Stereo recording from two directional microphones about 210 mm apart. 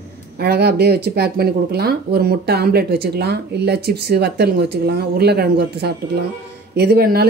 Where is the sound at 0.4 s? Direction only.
50° right (ahead or behind).